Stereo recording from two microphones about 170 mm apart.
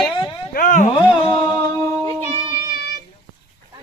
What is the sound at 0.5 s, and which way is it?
Speech, 50° left (ahead or behind).